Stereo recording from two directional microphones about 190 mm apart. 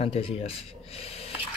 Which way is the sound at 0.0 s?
30° left (ahead or behind).